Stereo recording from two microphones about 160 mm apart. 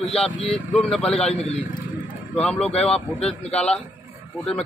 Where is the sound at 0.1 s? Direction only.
5° left (ahead or behind).